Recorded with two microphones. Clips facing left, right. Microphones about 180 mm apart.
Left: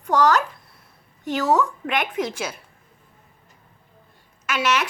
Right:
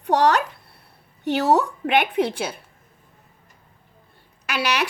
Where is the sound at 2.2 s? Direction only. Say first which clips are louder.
Right 4 dB; 30° right (ahead or behind).